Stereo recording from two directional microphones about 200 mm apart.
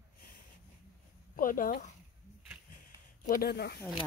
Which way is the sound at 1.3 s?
45° left (ahead or behind).